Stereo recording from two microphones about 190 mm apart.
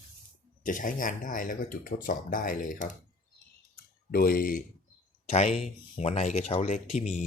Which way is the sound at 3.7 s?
50° left (ahead or behind).